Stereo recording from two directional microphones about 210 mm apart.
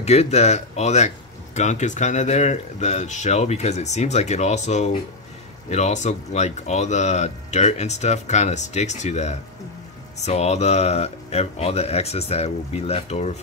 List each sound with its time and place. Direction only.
0.0 s speech: 30° left (ahead or behind)